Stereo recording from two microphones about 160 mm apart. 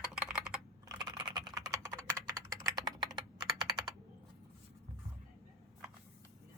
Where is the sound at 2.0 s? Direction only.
5° left (ahead or behind).